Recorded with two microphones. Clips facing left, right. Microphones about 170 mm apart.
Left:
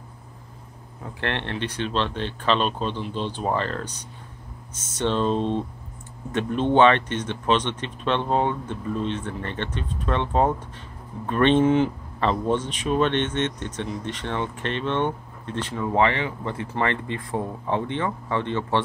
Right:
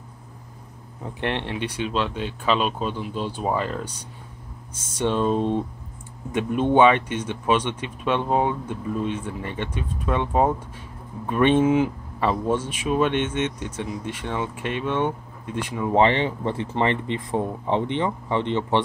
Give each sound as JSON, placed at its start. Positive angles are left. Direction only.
{"t": 1.0, "sound": "speech", "side_deg": -15}
{"t": 15.9, "sound": "speech", "side_deg": -25}